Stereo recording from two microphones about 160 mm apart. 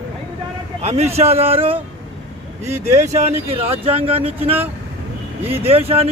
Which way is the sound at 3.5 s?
40° right (ahead or behind).